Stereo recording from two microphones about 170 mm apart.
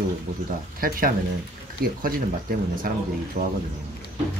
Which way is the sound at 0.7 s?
55° right (ahead or behind).